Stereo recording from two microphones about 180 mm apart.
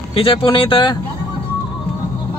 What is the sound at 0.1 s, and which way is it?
Speech, 30° left (ahead or behind).